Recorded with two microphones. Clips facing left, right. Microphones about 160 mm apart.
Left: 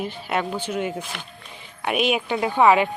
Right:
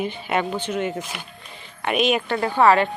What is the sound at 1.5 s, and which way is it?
Speech, 10° left (ahead or behind).